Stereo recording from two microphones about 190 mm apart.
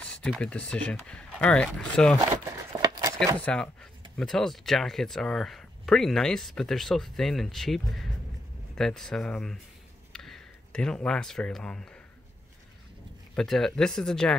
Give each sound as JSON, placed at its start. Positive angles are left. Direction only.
{"t": 0.0, "sound": "speech", "side_deg": 5}
{"t": 2.2, "sound": "a sound", "side_deg": -15}
{"t": 3.3, "sound": "speech", "side_deg": 10}
{"t": 13.4, "sound": "speech", "side_deg": 0}